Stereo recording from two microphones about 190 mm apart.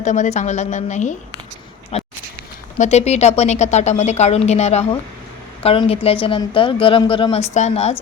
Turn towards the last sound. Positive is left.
turn(degrees=35)  # may be behind; listen again after turning